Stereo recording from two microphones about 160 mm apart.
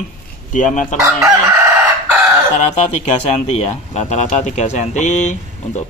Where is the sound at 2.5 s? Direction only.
45° left (ahead or behind).